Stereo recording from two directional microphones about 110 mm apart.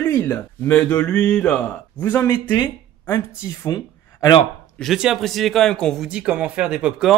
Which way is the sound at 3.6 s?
35° left (ahead or behind).